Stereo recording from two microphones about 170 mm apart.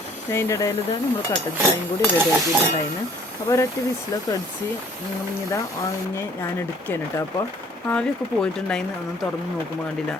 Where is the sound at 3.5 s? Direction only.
25° left (ahead or behind).